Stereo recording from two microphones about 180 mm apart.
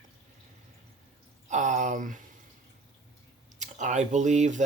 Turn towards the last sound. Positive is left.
turn(degrees=-40)  # may be behind; listen again after turning